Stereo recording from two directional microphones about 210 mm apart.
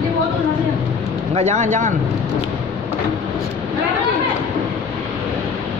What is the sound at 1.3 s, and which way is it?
Speech, 35° right (ahead or behind).